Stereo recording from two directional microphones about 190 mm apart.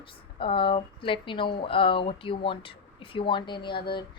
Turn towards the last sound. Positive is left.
turn(degrees=25)  # may be behind; listen again after turning